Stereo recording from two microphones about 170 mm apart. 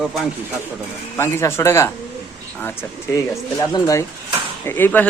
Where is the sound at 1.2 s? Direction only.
15° left (ahead or behind).